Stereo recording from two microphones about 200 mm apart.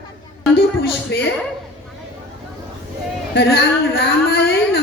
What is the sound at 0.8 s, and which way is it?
Speech, 55° left (ahead or behind).